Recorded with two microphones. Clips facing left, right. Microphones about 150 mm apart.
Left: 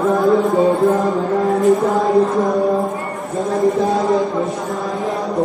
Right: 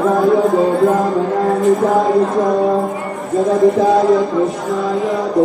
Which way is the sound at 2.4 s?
25° right (ahead or behind).